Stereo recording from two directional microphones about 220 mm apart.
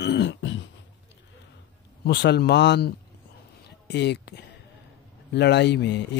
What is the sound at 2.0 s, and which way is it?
Speech, 50° left (ahead or behind).